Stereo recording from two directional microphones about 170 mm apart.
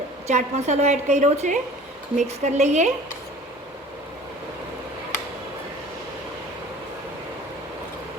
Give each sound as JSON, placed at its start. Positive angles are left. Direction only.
{"t": 0.3, "sound": "a woman's voice", "side_deg": -40}